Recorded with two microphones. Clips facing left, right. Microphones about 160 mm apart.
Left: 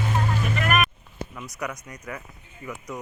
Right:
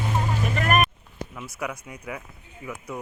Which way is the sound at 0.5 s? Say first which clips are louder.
Right 2 dB; 35° right (ahead or behind).